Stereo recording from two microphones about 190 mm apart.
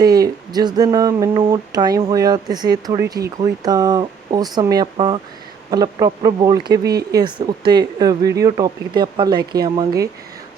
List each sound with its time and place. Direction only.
0.0 s speech: 20° right (ahead or behind)